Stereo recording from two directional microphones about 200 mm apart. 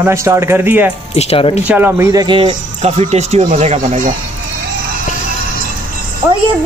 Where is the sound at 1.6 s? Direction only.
10° right (ahead or behind); by 4.1 s 35° right (ahead or behind).